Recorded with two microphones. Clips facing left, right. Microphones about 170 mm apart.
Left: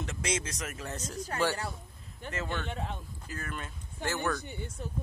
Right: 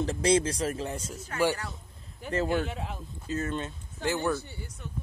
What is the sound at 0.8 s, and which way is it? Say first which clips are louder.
Speech: right 2 dB; 10° right (ahead or behind).